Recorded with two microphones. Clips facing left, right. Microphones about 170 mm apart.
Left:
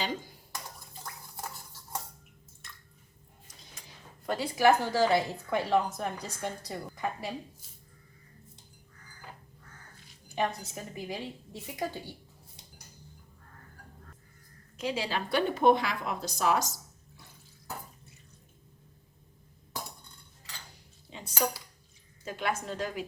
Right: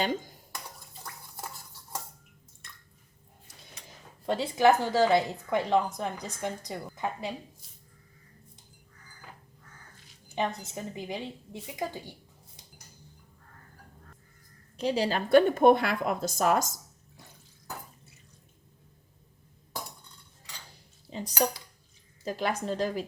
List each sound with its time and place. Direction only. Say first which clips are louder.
4.3 s a woman's voice: right 2 dB; 25° right (ahead or behind)
10.2 s a woman's voice: even; 20° right (ahead or behind)
14.8 s a woman's voice: right 5 dB; 35° right (ahead or behind)
21.1 s a sound: right 8 dB; 40° right (ahead or behind)
22.2 s a woman's voice: right 3 dB; 35° right (ahead or behind)